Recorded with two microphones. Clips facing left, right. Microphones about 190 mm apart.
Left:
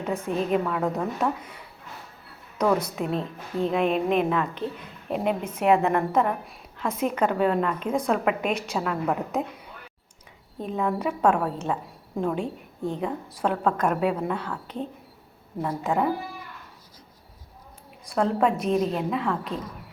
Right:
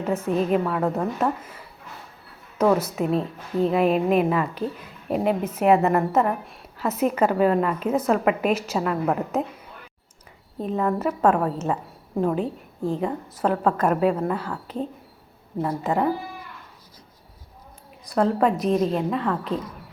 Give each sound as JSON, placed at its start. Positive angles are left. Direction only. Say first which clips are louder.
{"t": 0.0, "sound": "a woman's voice", "louder": "right 4 dB", "side_deg": 0}
{"t": 2.7, "sound": "a woman's voice", "louder": "right 4 dB", "side_deg": -5}
{"t": 18.1, "sound": "a woman's voice", "louder": "right 2 dB", "side_deg": 0}